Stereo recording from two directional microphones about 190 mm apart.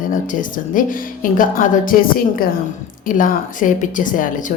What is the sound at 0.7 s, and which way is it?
A woman's voice, 45° left (ahead or behind).